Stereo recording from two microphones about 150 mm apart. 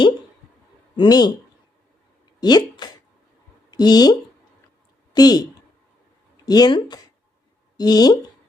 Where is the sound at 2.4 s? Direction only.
25° left (ahead or behind).